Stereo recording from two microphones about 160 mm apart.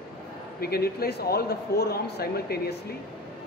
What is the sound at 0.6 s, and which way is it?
A man's voice, 75° left (ahead or behind).